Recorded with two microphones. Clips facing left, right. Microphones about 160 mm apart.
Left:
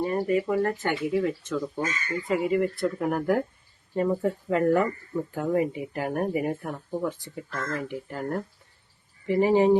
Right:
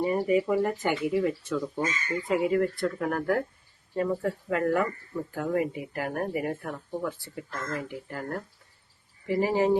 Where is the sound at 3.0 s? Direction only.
15° left (ahead or behind).